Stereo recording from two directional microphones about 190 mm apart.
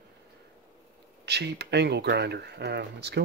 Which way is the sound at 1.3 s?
60° right (ahead or behind).